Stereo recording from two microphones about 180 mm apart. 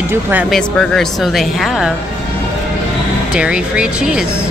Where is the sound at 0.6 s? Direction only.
5° left (ahead or behind).